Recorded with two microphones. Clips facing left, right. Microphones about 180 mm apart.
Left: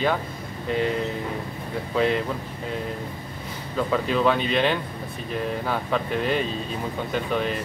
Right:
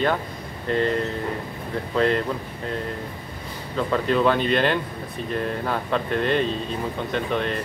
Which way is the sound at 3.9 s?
Centre (ahead or behind).